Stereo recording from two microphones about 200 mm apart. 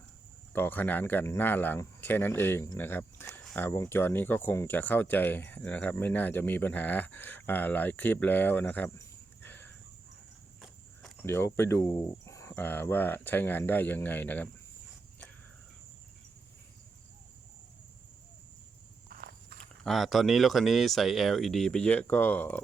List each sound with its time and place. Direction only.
0.5 s speech: 10° left (ahead or behind)
11.3 s speech: 10° left (ahead or behind)
19.0 s walk: 50° right (ahead or behind)
19.8 s speech: centre (ahead or behind)